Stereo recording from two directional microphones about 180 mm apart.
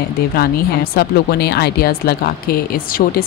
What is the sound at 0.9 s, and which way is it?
Speech, 60° left (ahead or behind).